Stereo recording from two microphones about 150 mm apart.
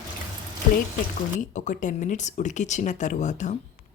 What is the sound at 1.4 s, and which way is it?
Speech, 55° left (ahead or behind).